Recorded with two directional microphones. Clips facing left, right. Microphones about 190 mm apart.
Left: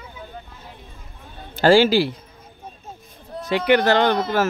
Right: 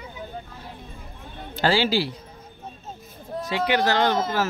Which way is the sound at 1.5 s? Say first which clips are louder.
Left 7 dB; 50° left (ahead or behind).